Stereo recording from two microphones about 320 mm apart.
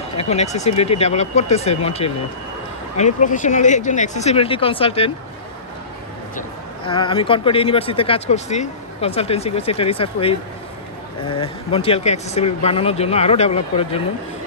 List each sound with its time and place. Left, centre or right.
0.2 s speech: centre
6.9 s speech: centre